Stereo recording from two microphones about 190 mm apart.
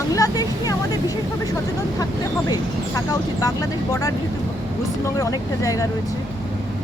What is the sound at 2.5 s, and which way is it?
Speech, 20° left (ahead or behind).